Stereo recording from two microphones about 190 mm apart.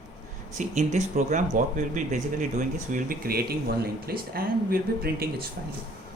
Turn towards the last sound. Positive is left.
turn(degrees=-55)  # may be behind; listen again after turning